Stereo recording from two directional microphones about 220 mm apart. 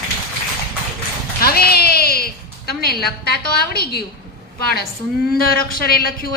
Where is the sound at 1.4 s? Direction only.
45° left (ahead or behind).